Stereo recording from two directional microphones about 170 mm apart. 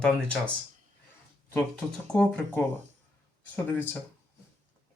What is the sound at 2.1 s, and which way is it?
Speech, 10° left (ahead or behind).